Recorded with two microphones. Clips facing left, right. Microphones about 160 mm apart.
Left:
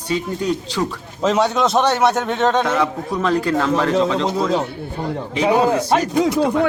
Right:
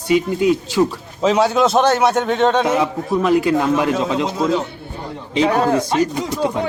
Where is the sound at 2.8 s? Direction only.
15° right (ahead or behind).